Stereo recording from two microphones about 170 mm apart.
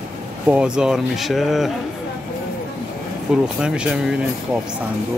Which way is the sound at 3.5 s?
5° right (ahead or behind).